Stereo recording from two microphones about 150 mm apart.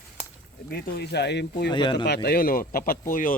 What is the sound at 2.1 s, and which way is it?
Speech, 90° left.